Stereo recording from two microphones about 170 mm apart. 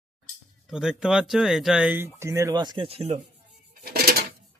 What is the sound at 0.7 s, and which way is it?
Speech, 5° right (ahead or behind).